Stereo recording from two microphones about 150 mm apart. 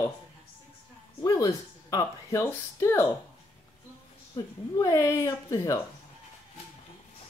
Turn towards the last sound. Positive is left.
turn(degrees=20)  # may be behind; listen again after turning